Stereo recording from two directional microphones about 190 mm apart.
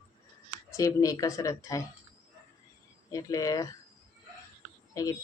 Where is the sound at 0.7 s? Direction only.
15° left (ahead or behind).